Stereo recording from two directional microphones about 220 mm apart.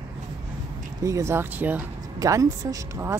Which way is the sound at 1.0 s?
15° right (ahead or behind).